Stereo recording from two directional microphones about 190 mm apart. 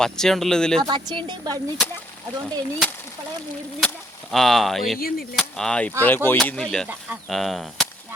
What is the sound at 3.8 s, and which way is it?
Whip, centre (ahead or behind).